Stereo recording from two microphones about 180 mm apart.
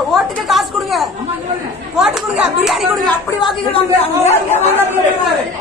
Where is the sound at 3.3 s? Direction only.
25° left (ahead or behind).